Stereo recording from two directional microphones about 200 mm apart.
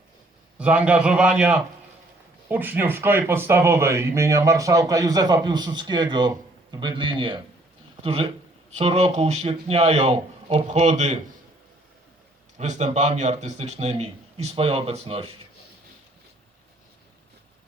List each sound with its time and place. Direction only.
0.6 s a man's voice: 5° right (ahead or behind); by 11.2 s 35° right (ahead or behind)
12.5 s speech: 35° right (ahead or behind)